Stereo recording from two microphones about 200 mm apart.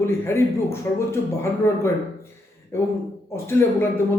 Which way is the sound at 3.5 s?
10° left (ahead or behind).